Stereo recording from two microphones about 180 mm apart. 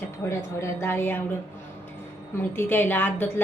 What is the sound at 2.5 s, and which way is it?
Speech, 10° left (ahead or behind).